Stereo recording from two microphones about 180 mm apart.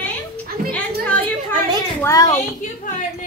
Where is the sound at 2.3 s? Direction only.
45° left (ahead or behind).